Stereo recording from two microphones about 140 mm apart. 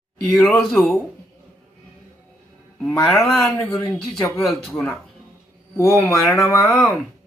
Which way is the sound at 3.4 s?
20° left (ahead or behind).